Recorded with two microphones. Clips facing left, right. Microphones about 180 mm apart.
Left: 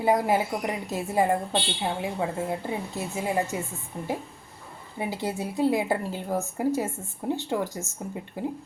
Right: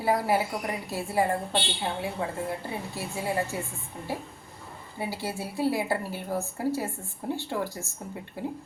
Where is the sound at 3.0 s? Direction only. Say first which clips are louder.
Left 2 dB; 20° left (ahead or behind).